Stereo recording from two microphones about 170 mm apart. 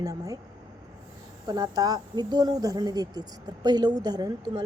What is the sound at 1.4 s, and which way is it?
Speech, 20° right (ahead or behind).